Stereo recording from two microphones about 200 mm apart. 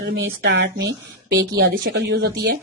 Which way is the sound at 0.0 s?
60° right (ahead or behind).